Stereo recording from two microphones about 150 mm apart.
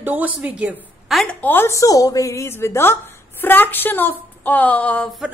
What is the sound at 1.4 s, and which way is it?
A woman's voice, 15° left (ahead or behind).